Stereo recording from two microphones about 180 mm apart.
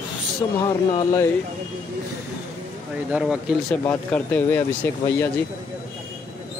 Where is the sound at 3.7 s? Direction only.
5° left (ahead or behind).